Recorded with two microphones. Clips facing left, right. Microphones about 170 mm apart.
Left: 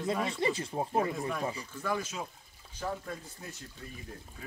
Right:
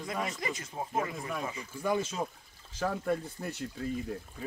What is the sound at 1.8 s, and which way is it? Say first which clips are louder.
Speech: right 4 dB; 20° right (ahead or behind).